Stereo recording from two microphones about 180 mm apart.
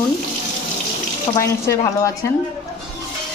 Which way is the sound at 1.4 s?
15° left (ahead or behind).